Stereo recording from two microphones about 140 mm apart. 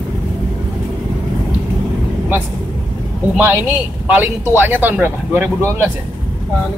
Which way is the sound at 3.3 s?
15° right (ahead or behind).